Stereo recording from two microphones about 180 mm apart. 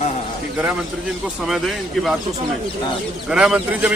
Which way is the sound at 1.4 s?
Centre (ahead or behind).